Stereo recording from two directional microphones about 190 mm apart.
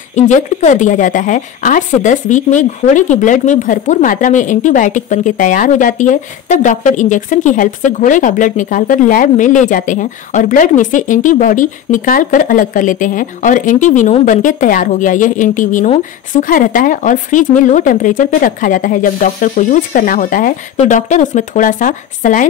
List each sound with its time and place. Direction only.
0.1 s speech: 40° left (ahead or behind)